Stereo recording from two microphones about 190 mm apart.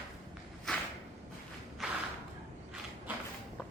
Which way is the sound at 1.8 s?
5° right (ahead or behind).